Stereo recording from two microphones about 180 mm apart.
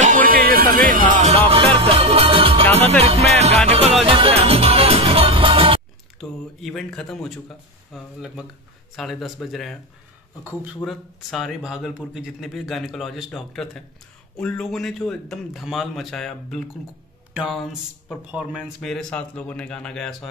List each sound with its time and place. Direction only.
0.0 s music: 45° right (ahead or behind)
0.7 s speech: 50° right (ahead or behind)
1.5 s music: 30° right (ahead or behind)
6.1 s speech: centre (ahead or behind)
10.9 s speech: centre (ahead or behind)